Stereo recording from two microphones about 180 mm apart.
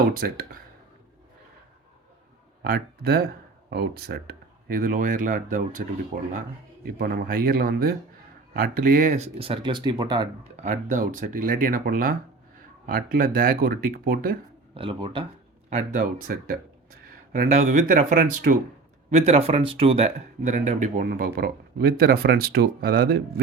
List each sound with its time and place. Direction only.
0.2 s speech: 55° right (ahead or behind)
2.6 s speech: 60° right (ahead or behind)
7.0 s speech: 55° right (ahead or behind); by 10.2 s 25° right (ahead or behind)
10.6 s speech: 45° right (ahead or behind)
14.8 s speech: 30° right (ahead or behind)
15.7 s speech: 50° right (ahead or behind)
19.1 s speech: 35° right (ahead or behind); by 23.4 s 60° right (ahead or behind)